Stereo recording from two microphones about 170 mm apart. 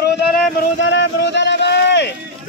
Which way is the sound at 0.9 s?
90° left.